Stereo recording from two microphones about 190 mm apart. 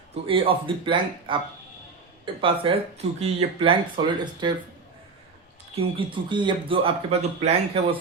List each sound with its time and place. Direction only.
0.3 s speech: 30° right (ahead or behind)
5.7 s speech: 25° right (ahead or behind)